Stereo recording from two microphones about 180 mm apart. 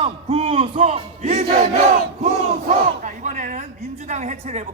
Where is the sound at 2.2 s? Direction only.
45° right (ahead or behind).